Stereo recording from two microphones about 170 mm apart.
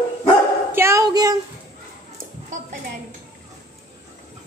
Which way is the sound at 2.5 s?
50° right (ahead or behind).